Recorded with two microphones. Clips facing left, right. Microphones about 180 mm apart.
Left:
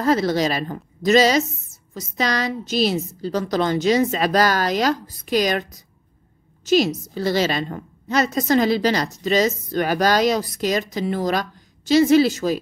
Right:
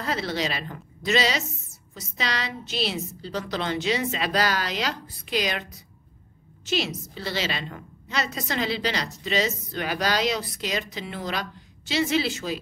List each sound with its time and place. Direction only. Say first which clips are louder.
0.0 s a woman's voice: left 9 dB; 45° left (ahead or behind)